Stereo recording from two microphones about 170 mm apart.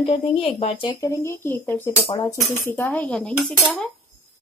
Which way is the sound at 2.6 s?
10° left (ahead or behind).